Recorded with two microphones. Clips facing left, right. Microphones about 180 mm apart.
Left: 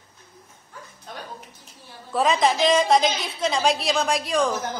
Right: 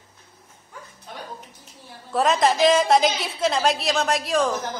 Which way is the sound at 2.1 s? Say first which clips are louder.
Right 1 dB; centre (ahead or behind).